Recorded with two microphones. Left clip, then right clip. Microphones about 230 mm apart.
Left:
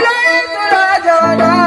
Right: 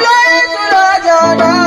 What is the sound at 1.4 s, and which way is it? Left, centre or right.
Music, right.